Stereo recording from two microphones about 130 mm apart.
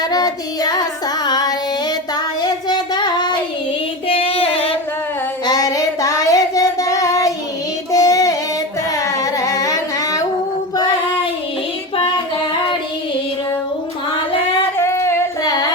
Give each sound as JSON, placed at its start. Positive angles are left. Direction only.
{"t": 0.0, "sound": "child singing", "side_deg": 30}
{"t": 4.1, "sound": "female singing", "side_deg": 45}
{"t": 5.5, "sound": "child singing", "side_deg": 30}
{"t": 8.9, "sound": "singing", "side_deg": 25}
{"t": 14.8, "sound": "singing", "side_deg": 20}